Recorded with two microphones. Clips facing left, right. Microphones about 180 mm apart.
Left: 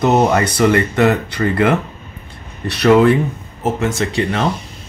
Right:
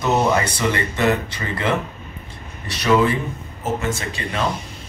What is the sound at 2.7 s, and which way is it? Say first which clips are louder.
Speech: left 7 dB; 65° left (ahead or behind).